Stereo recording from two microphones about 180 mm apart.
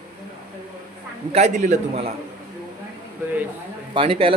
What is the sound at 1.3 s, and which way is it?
Speech, 35° right (ahead or behind).